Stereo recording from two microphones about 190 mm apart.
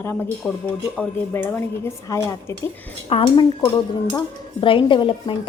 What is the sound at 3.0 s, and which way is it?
A woman's voice, 30° left (ahead or behind).